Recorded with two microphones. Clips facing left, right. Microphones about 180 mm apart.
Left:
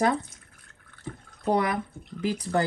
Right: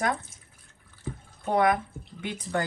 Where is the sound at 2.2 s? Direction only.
35° left (ahead or behind).